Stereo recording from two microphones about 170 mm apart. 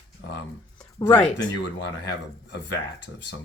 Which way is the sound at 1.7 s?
80° left.